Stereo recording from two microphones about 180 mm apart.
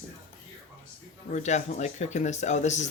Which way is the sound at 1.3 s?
40° left (ahead or behind).